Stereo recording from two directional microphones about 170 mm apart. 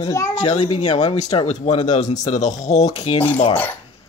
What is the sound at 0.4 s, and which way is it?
A man's voice, 35° left (ahead or behind).